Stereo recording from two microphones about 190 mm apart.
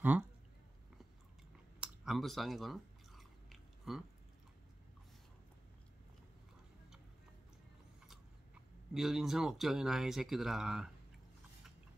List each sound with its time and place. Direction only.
1.8 s chewing: centre (ahead or behind)
8.9 s speech: centre (ahead or behind)